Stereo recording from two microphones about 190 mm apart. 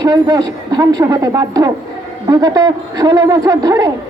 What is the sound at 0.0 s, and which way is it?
Speech, 20° right (ahead or behind).